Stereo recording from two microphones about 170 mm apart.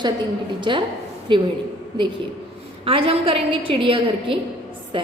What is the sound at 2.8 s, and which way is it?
A woman's voice, 35° right (ahead or behind).